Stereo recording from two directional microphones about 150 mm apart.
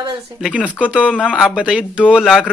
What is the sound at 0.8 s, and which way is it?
Speech, 5° right (ahead or behind).